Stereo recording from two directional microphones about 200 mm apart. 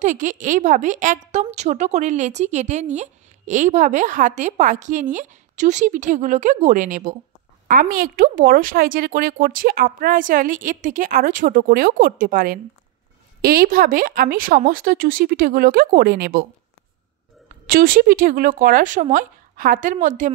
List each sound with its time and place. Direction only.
0.0 s a woman's voice: 40° right (ahead or behind)
17.6 s a woman's voice: 45° right (ahead or behind)